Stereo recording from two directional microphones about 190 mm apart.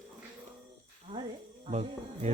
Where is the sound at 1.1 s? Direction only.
30° right (ahead or behind).